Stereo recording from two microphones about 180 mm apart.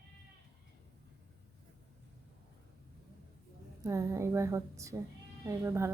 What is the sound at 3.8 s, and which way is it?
A woman's voice, 15° right (ahead or behind).